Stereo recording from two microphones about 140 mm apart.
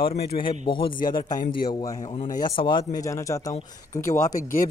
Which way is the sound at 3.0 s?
20° left (ahead or behind).